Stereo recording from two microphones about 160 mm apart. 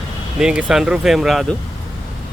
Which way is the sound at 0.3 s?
5° right (ahead or behind).